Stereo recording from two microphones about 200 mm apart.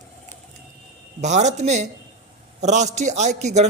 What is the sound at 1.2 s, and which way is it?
Speech, 35° right (ahead or behind).